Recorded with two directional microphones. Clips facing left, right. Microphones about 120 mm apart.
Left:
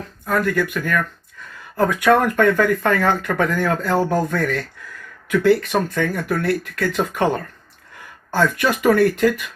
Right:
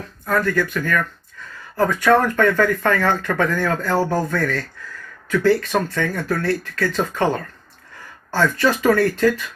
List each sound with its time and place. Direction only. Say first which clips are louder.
0.4 s speech: even; 15° left (ahead or behind)